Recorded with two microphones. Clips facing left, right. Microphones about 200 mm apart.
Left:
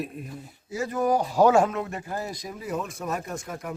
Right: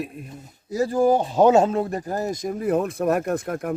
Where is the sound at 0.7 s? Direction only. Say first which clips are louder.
Right 6 dB; 35° right (ahead or behind); by 3.8 s 55° right (ahead or behind).